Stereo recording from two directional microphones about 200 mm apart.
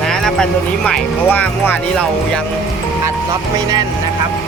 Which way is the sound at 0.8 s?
5° left (ahead or behind).